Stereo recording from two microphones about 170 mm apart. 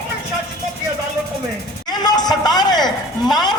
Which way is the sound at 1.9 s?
25° left (ahead or behind).